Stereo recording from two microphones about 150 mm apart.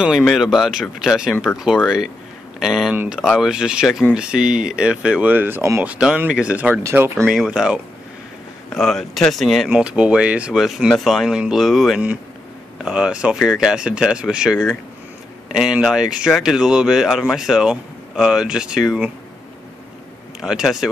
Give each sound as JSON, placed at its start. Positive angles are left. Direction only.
{"t": 0.0, "sound": "speech", "side_deg": 0}
{"t": 20.3, "sound": "speech", "side_deg": -5}